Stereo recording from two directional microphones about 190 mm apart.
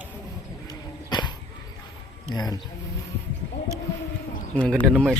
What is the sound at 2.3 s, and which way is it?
Speech, 20° left (ahead or behind).